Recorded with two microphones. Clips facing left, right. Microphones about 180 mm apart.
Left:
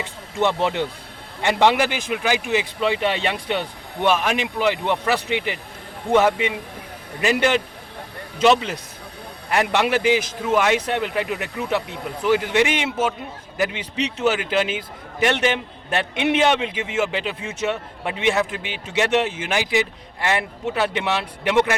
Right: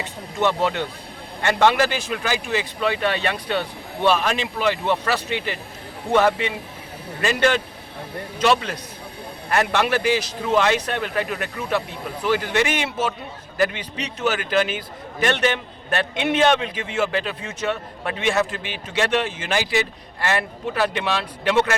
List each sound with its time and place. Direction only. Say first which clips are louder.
0.3 s a man's voice: left 1 dB; 25° left (ahead or behind)